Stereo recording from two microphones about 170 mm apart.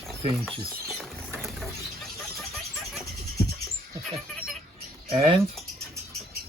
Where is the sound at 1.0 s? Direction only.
Centre (ahead or behind).